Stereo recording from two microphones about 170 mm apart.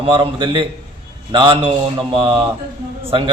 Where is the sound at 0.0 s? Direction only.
30° right (ahead or behind).